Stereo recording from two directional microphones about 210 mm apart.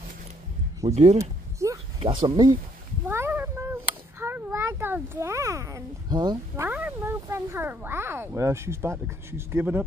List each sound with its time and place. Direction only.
0.8 s speech: 30° right (ahead or behind)
1.6 s a sound: 15° right (ahead or behind)
2.2 s speech: 20° right (ahead or behind)